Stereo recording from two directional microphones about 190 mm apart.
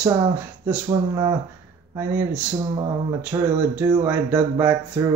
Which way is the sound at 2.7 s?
25° right (ahead or behind).